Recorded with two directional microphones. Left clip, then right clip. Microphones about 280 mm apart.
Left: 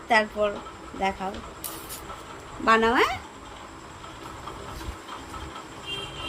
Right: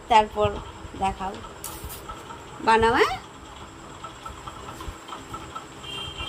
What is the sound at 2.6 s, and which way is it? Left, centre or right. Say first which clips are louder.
Speech: right 1 dB; centre.